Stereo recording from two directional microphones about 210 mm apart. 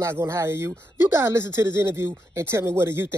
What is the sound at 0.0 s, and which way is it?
Speech, 10° right (ahead or behind).